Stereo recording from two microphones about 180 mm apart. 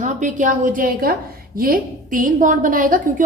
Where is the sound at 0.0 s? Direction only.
45° right (ahead or behind).